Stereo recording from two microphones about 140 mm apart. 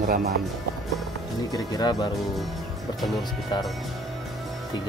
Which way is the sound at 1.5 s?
30° left (ahead or behind).